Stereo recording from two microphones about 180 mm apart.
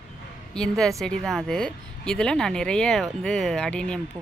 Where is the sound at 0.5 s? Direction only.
5° left (ahead or behind).